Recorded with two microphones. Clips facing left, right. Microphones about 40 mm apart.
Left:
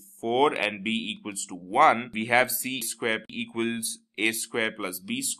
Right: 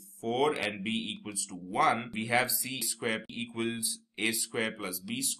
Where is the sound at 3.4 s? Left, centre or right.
Left.